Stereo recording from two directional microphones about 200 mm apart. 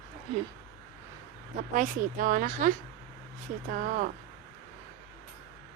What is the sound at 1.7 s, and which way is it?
Speech, 40° right (ahead or behind).